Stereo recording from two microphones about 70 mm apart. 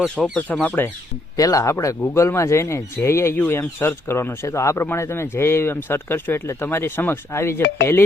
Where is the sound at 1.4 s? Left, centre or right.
Left.